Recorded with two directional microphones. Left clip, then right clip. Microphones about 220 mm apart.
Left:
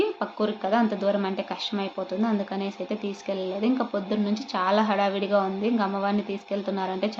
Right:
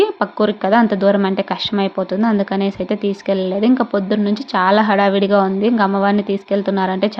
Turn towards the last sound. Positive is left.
turn(degrees=-35)  # may be behind; listen again after turning